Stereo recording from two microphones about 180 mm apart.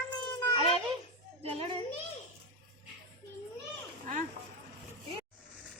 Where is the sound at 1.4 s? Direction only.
35° right (ahead or behind).